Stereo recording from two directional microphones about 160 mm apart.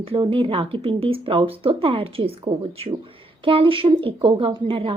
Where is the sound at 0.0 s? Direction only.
35° right (ahead or behind).